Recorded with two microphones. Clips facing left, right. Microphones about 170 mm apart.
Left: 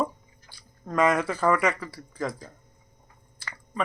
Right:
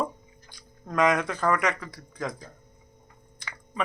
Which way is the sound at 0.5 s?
5° left (ahead or behind).